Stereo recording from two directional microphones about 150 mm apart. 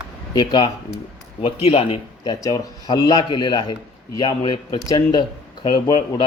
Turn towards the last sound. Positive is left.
turn(degrees=30)  # may be behind; listen again after turning